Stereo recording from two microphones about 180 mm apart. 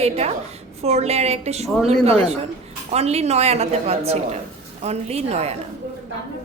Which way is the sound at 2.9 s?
35° right (ahead or behind).